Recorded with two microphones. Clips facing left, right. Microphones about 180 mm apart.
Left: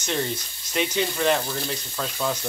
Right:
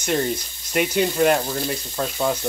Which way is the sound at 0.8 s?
10° right (ahead or behind).